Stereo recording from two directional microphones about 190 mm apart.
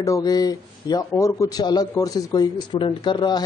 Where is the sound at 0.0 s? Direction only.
20° left (ahead or behind).